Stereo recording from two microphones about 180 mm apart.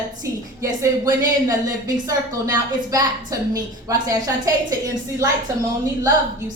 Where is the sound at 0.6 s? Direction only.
20° right (ahead or behind).